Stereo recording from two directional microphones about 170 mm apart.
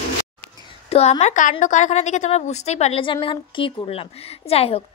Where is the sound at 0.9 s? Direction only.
40° left (ahead or behind).